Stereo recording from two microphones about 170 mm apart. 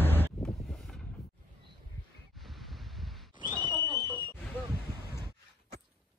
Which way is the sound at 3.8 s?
25° right (ahead or behind).